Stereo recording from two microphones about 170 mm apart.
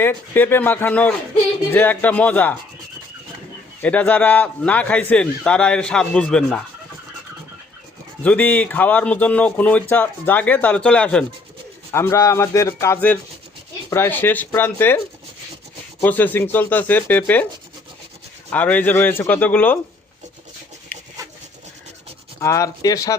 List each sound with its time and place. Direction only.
0.0 s a man's voice: 10° left (ahead or behind)
3.8 s a man's voice: 10° left (ahead or behind)
8.2 s a man's voice: 10° left (ahead or behind)
18.5 s a man's voice: 10° left (ahead or behind)
20.9 s rub: 10° left (ahead or behind)
22.4 s speech: 15° left (ahead or behind)